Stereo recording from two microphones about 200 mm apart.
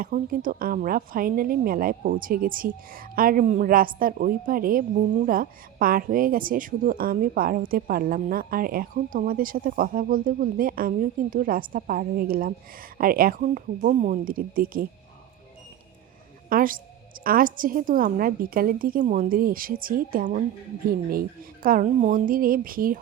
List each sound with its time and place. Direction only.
0.0 s speech: 45° right (ahead or behind)
16.5 s speech: 45° right (ahead or behind)